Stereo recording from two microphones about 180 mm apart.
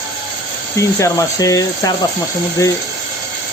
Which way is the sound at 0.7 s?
15° left (ahead or behind).